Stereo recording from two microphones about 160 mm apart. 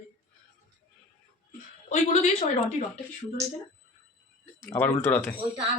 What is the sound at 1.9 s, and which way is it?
Speech, 45° left (ahead or behind).